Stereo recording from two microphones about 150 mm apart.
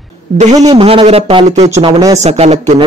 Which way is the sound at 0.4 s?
50° right (ahead or behind).